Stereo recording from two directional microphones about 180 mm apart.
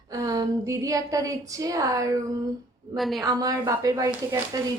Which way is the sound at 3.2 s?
20° right (ahead or behind).